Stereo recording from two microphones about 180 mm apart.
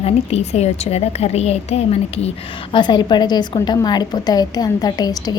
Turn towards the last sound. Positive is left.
turn(degrees=20)  # may be behind; listen again after turning